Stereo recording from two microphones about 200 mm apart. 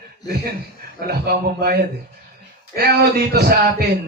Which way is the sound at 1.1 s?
50° right (ahead or behind).